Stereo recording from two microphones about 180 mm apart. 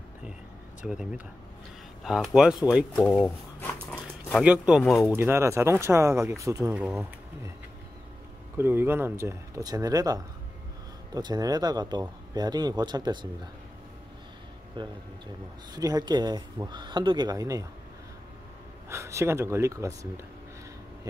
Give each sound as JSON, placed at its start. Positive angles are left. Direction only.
{"t": 0.8, "sound": "speech", "side_deg": -5}
{"t": 2.0, "sound": "speech", "side_deg": -5}
{"t": 3.1, "sound": "speech", "side_deg": 10}
{"t": 4.3, "sound": "speech", "side_deg": -5}
{"t": 5.1, "sound": "speech", "side_deg": -15}
{"t": 8.5, "sound": "speech", "side_deg": -10}
{"t": 14.8, "sound": "speech", "side_deg": -25}
{"t": 18.9, "sound": "speech", "side_deg": -15}